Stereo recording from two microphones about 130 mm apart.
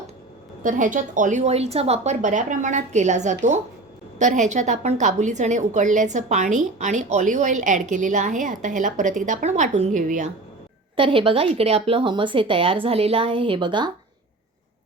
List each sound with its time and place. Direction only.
0.6 s a woman's voice: 85° right
10.9 s a woman's voice: 40° right (ahead or behind)